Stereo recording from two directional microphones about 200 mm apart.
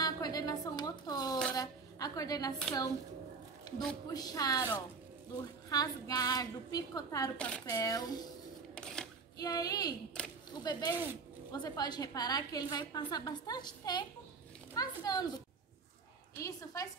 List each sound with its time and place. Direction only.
0.0 s a sound: 20° left (ahead or behind)
4.1 s a woman's voice: 20° left (ahead or behind)
7.3 s speech: 5° left (ahead or behind)
7.6 s a child's voice: 15° left (ahead or behind)
8.7 s camera: 5° left (ahead or behind)
9.4 s a woman's voice: 20° left (ahead or behind)
10.2 s speech: 5° left (ahead or behind)
10.6 s a woman's voice: 20° left (ahead or behind)
16.4 s a child's voice: 15° left (ahead or behind)